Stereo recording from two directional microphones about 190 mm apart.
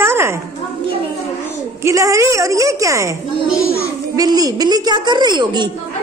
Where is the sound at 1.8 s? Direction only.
15° right (ahead or behind).